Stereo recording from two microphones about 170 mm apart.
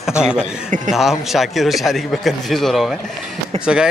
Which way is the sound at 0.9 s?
Centre (ahead or behind).